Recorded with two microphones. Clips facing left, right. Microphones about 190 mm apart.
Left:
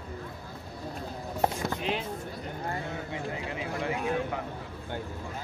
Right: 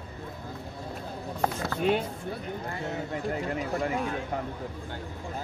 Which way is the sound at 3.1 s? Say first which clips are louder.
Right 4 dB; 50° right (ahead or behind).